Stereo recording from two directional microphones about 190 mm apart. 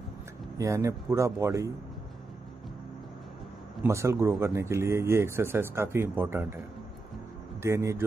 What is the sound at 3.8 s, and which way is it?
Speech, 15° right (ahead or behind).